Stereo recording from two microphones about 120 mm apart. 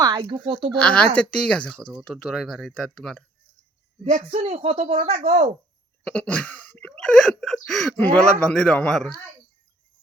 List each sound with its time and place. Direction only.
0.0 s a sound: 40° right (ahead or behind)
0.4 s speech: 50° right (ahead or behind)
0.7 s speech: 10° left (ahead or behind)
4.0 s speech: 80° right; by 5.5 s 60° right (ahead or behind)
6.1 s speech: 10° left (ahead or behind)